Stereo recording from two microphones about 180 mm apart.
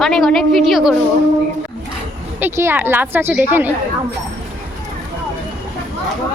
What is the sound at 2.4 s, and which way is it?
A woman's voice, 15° right (ahead or behind).